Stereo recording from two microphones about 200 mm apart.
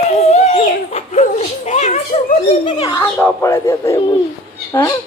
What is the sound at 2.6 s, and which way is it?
A woman's voice, 20° left (ahead or behind).